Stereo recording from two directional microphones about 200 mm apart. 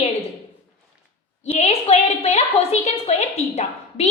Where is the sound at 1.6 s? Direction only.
30° left (ahead or behind).